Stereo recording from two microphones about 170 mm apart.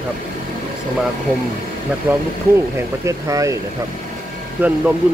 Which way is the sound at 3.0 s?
20° right (ahead or behind).